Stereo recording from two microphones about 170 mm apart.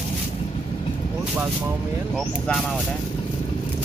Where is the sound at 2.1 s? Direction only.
Centre (ahead or behind).